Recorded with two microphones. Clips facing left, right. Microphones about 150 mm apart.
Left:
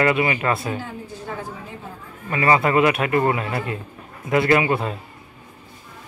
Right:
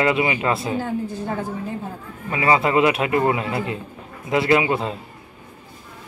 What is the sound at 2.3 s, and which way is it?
A man's voice, 15° right (ahead or behind).